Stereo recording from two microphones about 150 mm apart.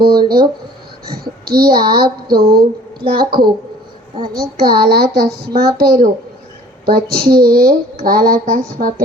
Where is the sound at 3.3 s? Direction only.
30° right (ahead or behind).